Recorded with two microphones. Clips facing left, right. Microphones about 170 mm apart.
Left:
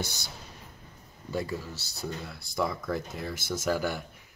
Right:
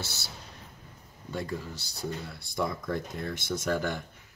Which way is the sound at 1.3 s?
5° left (ahead or behind).